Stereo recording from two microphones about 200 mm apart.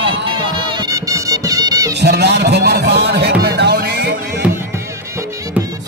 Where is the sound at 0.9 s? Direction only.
15° right (ahead or behind).